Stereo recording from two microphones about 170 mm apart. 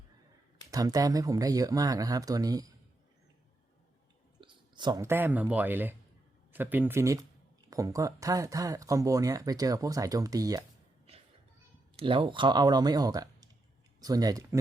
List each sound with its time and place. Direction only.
0.7 s speech: 20° right (ahead or behind)
4.4 s clicking: 30° right (ahead or behind)
5.0 s speech: 15° right (ahead or behind)
11.9 s speech: 30° right (ahead or behind)